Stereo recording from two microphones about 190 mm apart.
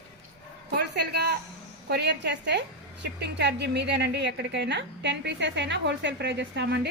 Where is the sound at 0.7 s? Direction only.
60° right (ahead or behind).